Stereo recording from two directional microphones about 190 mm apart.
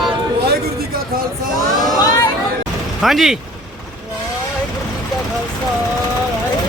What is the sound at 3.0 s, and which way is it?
Speech, centre (ahead or behind).